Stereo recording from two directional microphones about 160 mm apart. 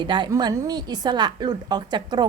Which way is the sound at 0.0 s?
30° right (ahead or behind).